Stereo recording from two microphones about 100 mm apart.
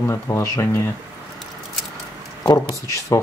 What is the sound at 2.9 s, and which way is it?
Speech, 35° left (ahead or behind).